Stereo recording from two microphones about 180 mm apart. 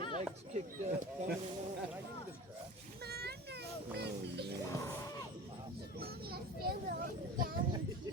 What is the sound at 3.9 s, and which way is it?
Speech, 65° right (ahead or behind).